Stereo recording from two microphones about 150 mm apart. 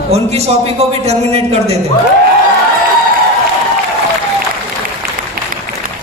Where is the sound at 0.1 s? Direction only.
45° right (ahead or behind).